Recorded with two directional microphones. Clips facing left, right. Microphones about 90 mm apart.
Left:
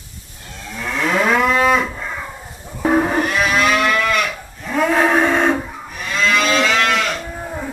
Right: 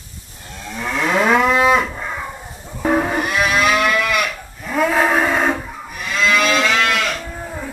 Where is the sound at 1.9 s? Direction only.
10° right (ahead or behind).